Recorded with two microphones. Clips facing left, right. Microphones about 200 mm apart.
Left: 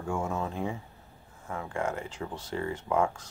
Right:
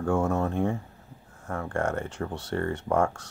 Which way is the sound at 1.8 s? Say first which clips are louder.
Right 4 dB; 75° right (ahead or behind).